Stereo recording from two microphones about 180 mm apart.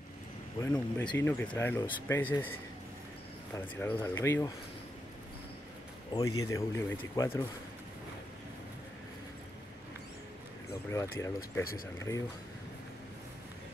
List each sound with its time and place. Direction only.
0.6 s speech: 10° left (ahead or behind)
3.5 s speech: 15° left (ahead or behind)
6.1 s speech: 15° left (ahead or behind)
10.9 s speech: 15° left (ahead or behind)